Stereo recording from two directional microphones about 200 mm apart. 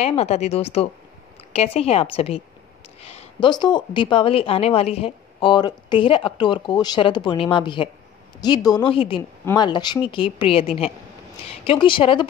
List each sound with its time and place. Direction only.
0.0 s a woman's voice: 30° left (ahead or behind)